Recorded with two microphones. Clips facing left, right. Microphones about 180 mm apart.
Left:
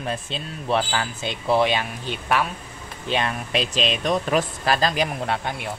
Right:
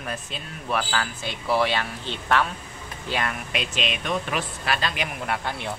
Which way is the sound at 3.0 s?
25° left (ahead or behind).